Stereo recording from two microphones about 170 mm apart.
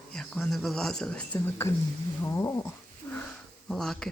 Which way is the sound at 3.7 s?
5° left (ahead or behind).